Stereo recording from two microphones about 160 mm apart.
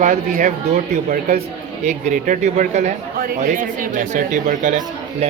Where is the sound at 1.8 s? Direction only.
50° right (ahead or behind).